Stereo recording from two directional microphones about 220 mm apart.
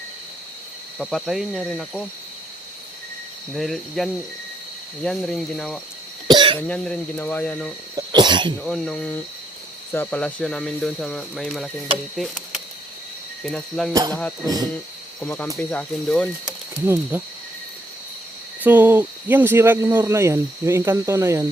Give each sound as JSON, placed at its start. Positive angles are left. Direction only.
{"t": 0.9, "sound": "speech", "side_deg": 0}
{"t": 3.5, "sound": "speech", "side_deg": 0}
{"t": 6.2, "sound": "cough", "side_deg": -20}
{"t": 6.7, "sound": "speech", "side_deg": 5}
{"t": 7.9, "sound": "cough", "side_deg": -20}
{"t": 8.6, "sound": "speech", "side_deg": 0}
{"t": 13.4, "sound": "speech", "side_deg": 0}
{"t": 14.4, "sound": "speech", "side_deg": -15}
{"t": 15.2, "sound": "speech", "side_deg": 5}
{"t": 16.8, "sound": "speech", "side_deg": -10}
{"t": 18.6, "sound": "speech", "side_deg": -10}